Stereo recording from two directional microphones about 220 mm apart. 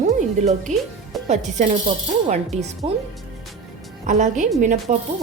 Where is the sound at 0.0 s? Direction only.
35° right (ahead or behind).